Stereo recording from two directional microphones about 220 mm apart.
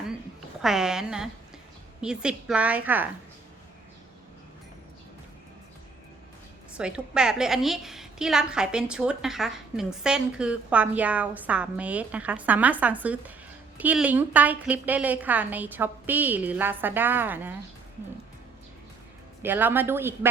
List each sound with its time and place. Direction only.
0.6 s a woman's voice: centre (ahead or behind)
6.7 s a woman's voice: 5° right (ahead or behind)
19.4 s a woman's voice: 10° right (ahead or behind)